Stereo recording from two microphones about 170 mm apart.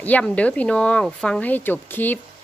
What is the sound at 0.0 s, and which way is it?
Speech, 10° left (ahead or behind).